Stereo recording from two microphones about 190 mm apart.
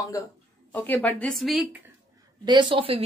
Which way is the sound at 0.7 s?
10° left (ahead or behind).